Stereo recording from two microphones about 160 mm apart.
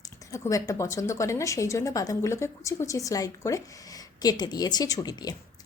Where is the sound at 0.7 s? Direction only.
20° left (ahead or behind).